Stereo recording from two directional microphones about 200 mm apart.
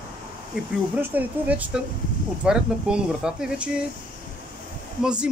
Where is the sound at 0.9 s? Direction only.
10° right (ahead or behind).